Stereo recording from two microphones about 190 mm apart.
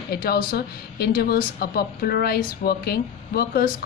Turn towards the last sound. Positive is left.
turn(degrees=55)  # may be behind; listen again after turning